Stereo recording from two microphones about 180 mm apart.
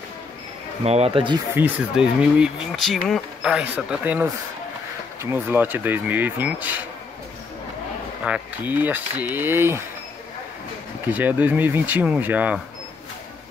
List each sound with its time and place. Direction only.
0.8 s speech: 35° right (ahead or behind)
1.5 s speech: 10° right (ahead or behind)
8.2 s speech: 10° right (ahead or behind)
11.1 s speech: 10° right (ahead or behind)